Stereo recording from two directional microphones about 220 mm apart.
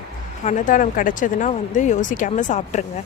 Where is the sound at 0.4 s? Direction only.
35° left (ahead or behind).